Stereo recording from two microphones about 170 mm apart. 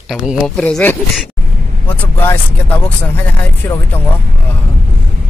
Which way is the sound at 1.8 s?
10° left (ahead or behind).